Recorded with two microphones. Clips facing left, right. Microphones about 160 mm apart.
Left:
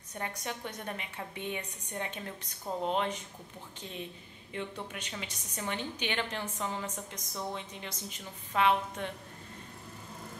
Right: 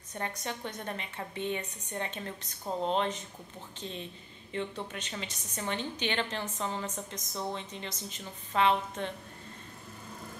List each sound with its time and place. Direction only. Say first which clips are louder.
0.1 s a woman's voice: right 1 dB; 10° left (ahead or behind)